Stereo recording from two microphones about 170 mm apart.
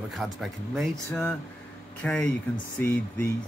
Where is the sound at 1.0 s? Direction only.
15° left (ahead or behind).